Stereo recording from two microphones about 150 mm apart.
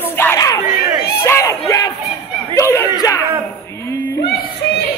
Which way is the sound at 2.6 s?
20° left (ahead or behind).